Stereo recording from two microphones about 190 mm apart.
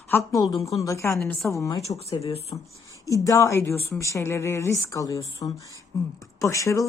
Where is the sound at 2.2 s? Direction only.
30° left (ahead or behind).